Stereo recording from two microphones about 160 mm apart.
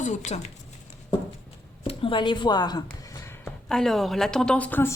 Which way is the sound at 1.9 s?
35° left (ahead or behind).